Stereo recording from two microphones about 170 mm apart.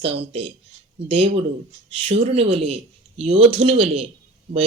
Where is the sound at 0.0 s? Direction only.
35° right (ahead or behind).